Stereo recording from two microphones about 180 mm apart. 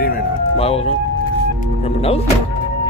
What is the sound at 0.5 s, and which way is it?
Speech, 35° left (ahead or behind).